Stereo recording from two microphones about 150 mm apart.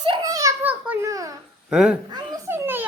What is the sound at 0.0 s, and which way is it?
Children playing, 35° right (ahead or behind).